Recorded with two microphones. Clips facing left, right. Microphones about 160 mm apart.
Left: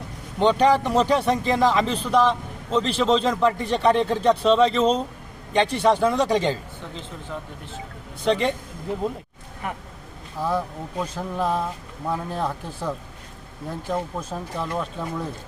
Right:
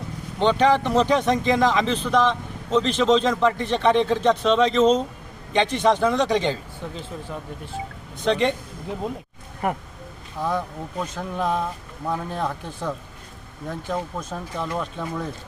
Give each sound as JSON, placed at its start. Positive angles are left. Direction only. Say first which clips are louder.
{"t": 0.3, "sound": "speech", "louder": "left 1 dB", "side_deg": 5}
{"t": 8.2, "sound": "speech", "louder": "right 1 dB", "side_deg": 5}
{"t": 9.6, "sound": "speech", "louder": "right 6 dB", "side_deg": -45}
{"t": 10.4, "sound": "speech", "louder": "left 1 dB", "side_deg": 5}